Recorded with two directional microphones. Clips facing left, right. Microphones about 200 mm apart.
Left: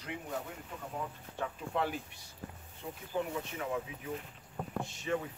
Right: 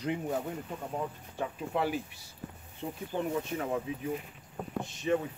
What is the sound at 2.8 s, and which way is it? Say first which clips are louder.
Speech: right 5 dB; 35° right (ahead or behind).